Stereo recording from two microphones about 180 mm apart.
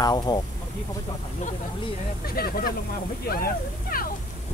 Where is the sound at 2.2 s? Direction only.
55° left (ahead or behind).